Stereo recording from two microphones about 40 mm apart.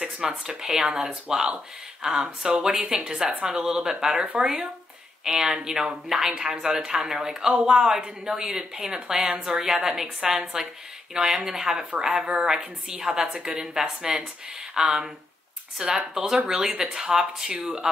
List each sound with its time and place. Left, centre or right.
0.2 s a woman's voice: centre
9.9 s a woman's voice: centre
16.4 s speech: centre